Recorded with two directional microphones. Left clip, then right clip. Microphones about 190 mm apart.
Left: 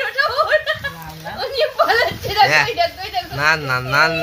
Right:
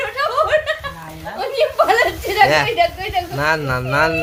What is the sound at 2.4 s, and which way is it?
Speech, 15° right (ahead or behind).